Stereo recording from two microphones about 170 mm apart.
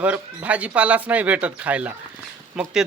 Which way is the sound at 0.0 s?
10° right (ahead or behind).